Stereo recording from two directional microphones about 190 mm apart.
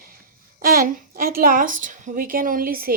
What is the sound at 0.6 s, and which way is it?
A woman's voice, 50° right (ahead or behind).